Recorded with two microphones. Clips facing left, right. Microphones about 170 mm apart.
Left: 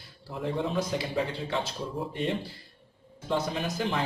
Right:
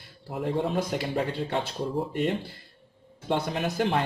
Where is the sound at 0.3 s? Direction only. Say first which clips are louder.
Right 3 dB; 55° right (ahead or behind).